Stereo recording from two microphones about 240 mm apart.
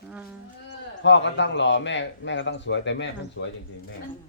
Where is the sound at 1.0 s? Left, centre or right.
Left.